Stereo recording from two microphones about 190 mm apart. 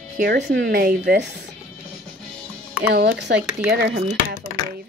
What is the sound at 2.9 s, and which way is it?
Speech, 60° right (ahead or behind).